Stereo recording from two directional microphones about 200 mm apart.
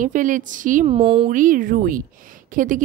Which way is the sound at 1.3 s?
40° right (ahead or behind).